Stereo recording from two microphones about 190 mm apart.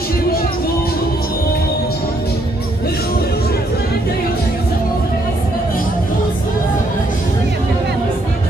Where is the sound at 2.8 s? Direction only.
55° left (ahead or behind).